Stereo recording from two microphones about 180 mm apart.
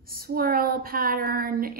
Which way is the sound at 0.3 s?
55° right (ahead or behind).